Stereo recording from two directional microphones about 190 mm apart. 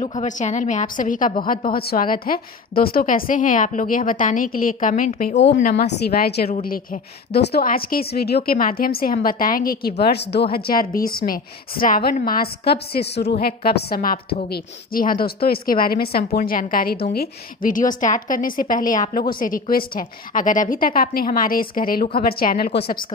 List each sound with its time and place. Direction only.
0.0 s a woman's voice: 40° left (ahead or behind)
5.3 s a woman's voice: 65° left (ahead or behind)
5.6 s a woman's voice: 50° left (ahead or behind)